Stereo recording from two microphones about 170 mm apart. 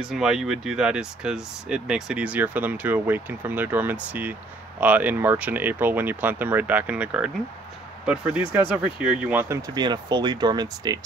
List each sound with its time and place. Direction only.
0.0 s speech: 5° right (ahead or behind); by 11.0 s 25° right (ahead or behind)